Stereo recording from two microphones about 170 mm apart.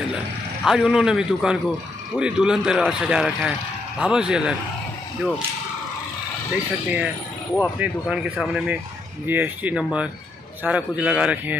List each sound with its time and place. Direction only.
0.7 s speech: 5° right (ahead or behind)
6.5 s a man's voice: 10° right (ahead or behind)